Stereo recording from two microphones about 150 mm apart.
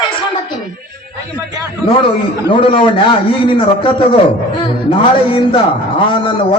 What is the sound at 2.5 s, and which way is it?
A man's voice, 35° left (ahead or behind).